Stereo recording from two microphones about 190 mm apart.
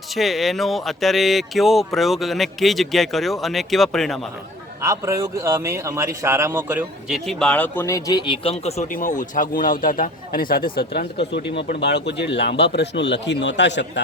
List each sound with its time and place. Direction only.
0.2 s speech: centre (ahead or behind)
4.8 s a man's voice: 15° right (ahead or behind)
7.3 s a man's voice: 5° left (ahead or behind); by 14.0 s 70° left (ahead or behind)